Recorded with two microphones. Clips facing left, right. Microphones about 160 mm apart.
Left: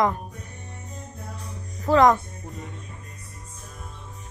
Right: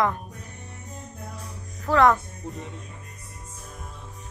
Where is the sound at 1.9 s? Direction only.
15° left (ahead or behind).